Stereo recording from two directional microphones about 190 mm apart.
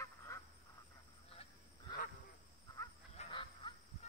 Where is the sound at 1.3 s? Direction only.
30° left (ahead or behind).